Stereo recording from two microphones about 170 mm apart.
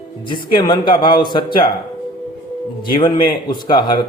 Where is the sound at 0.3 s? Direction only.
25° left (ahead or behind).